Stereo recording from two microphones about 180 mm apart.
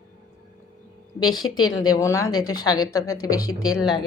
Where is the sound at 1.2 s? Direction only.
20° left (ahead or behind).